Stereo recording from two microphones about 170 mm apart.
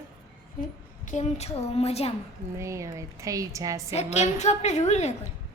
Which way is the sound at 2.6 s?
15° right (ahead or behind).